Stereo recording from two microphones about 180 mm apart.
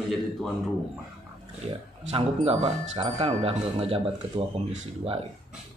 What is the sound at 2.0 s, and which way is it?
Speech, 35° right (ahead or behind).